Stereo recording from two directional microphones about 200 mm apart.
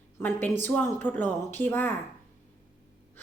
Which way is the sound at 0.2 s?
10° left (ahead or behind).